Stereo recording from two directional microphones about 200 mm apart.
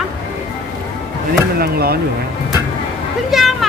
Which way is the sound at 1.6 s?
50° right (ahead or behind).